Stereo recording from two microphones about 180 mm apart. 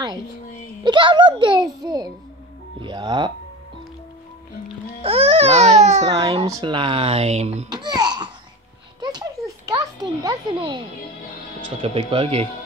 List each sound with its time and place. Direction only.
0.8 s a child's voice: 25° right (ahead or behind)
5.0 s speech: 30° right (ahead or behind)
6.0 s a child's voice: 20° right (ahead or behind); by 7.6 s 35° right (ahead or behind)
7.7 s speech: 20° right (ahead or behind)
9.0 s a sound: 20° right (ahead or behind)
11.8 s speech: 30° right (ahead or behind)